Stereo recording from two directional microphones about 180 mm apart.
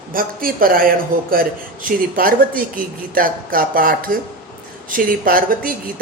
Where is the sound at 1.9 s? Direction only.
50° right (ahead or behind).